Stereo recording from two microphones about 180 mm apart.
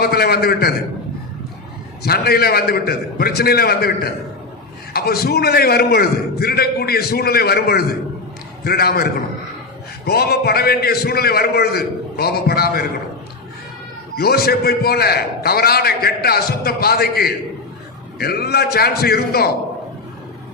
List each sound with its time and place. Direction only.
0.0 s a man's voice: 60° left (ahead or behind)
2.0 s a man's voice: 60° left (ahead or behind)
14.2 s a man's voice: 60° left (ahead or behind)